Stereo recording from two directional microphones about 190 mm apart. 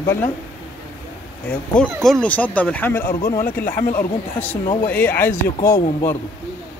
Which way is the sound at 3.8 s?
50° left (ahead or behind).